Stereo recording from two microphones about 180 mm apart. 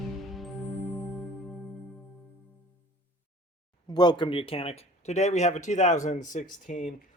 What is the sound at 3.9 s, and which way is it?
Speech, 25° left (ahead or behind).